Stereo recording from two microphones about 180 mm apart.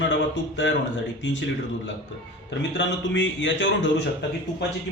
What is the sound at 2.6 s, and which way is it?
A man's voice, 80° left.